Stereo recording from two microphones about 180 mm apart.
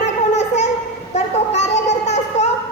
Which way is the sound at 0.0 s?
40° left (ahead or behind).